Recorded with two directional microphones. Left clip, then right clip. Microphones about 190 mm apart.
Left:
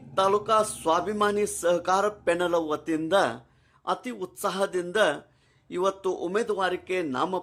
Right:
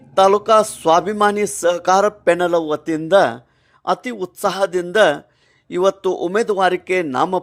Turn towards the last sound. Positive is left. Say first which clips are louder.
# right 10 dB
turn(degrees=-35)  # may be behind; listen again after turning